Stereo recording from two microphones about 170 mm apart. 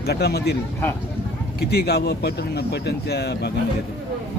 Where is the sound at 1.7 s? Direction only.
70° left (ahead or behind).